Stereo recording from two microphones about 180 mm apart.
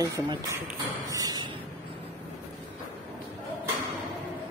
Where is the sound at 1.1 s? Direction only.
20° right (ahead or behind).